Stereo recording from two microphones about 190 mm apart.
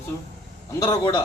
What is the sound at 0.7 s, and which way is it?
Speech, 20° left (ahead or behind).